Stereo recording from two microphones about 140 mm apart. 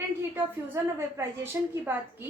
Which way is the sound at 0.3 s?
20° right (ahead or behind).